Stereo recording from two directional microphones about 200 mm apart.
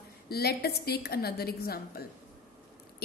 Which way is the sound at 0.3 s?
50° left (ahead or behind).